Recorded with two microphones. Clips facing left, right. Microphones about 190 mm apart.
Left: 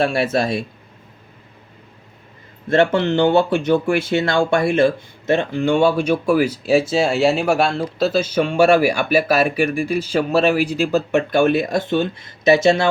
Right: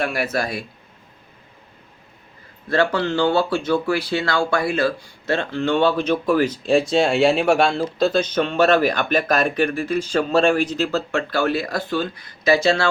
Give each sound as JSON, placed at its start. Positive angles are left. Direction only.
{"t": 0.0, "sound": "speech", "side_deg": 30}
{"t": 2.6, "sound": "speech", "side_deg": 25}